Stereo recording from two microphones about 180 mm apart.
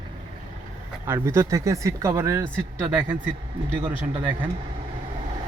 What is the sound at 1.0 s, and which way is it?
Speech, 15° right (ahead or behind).